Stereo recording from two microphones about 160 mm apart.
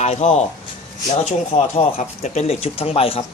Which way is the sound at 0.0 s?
45° left (ahead or behind).